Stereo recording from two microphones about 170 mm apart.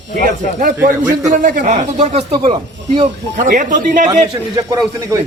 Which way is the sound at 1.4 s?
50° right (ahead or behind).